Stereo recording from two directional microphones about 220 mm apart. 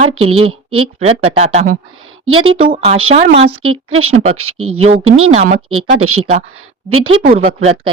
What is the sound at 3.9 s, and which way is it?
A woman's voice, 75° right (ahead or behind).